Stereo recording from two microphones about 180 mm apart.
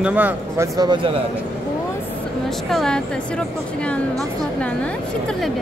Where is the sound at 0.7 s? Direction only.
25° right (ahead or behind).